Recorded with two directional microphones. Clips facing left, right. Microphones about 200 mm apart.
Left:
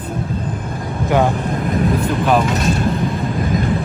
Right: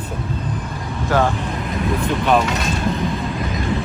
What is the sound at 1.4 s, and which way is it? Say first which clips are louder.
Vehicle: left 5 dB; 50° left (ahead or behind).